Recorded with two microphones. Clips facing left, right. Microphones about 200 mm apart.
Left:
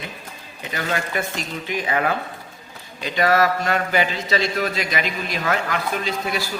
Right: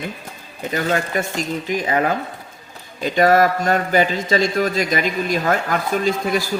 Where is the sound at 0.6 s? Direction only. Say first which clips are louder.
Right 5 dB; 45° right (ahead or behind).